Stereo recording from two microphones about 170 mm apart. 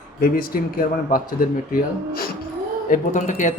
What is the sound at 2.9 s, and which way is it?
Speech, 50° left (ahead or behind).